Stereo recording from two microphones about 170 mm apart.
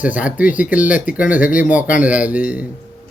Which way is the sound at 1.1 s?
50° left (ahead or behind).